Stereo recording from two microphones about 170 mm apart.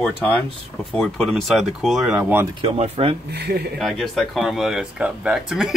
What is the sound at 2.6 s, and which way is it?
Speech, 35° right (ahead or behind).